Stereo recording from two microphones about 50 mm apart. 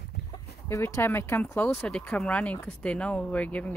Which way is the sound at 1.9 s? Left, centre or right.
Centre.